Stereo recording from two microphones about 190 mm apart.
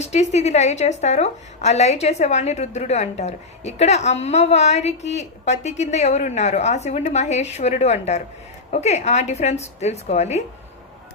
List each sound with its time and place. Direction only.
0.0 s a woman's voice: 35° left (ahead or behind)